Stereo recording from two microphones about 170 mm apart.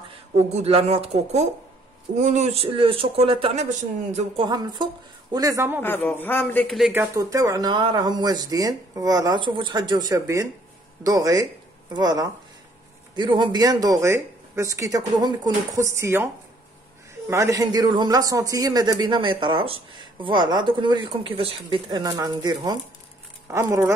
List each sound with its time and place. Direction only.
0.4 s speech: 40° right (ahead or behind)
5.3 s speech: 20° right (ahead or behind)
5.8 s a man's voice: 10° left (ahead or behind)
6.8 s speech: 10° right (ahead or behind)
17.3 s speech: 15° right (ahead or behind)